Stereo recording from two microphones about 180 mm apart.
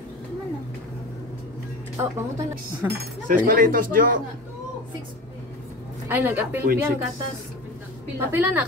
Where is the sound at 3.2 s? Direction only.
50° right (ahead or behind).